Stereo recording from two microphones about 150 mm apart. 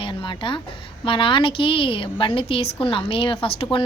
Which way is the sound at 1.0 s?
35° left (ahead or behind).